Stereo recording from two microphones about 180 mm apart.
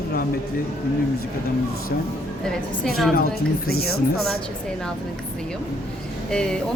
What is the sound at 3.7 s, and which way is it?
Speech, 60° left (ahead or behind).